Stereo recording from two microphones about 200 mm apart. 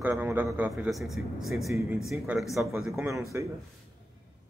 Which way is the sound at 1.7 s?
15° right (ahead or behind).